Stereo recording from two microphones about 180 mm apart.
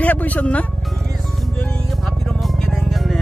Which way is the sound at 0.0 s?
10° left (ahead or behind).